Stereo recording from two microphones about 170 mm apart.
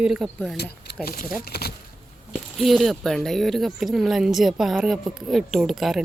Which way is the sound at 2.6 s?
Centre (ahead or behind).